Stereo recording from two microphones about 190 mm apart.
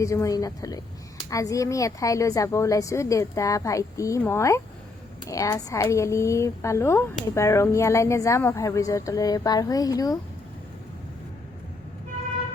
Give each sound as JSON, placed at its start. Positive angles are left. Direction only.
{"t": 0.0, "sound": "speech", "side_deg": 15}